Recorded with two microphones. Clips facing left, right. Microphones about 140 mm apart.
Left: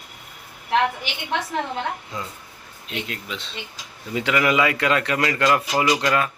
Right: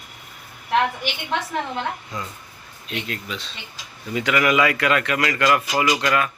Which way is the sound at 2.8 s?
20° left (ahead or behind).